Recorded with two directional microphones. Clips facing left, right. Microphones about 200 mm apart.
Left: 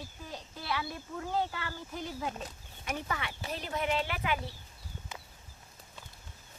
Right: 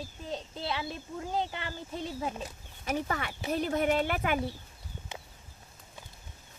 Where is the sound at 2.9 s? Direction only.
45° right (ahead or behind).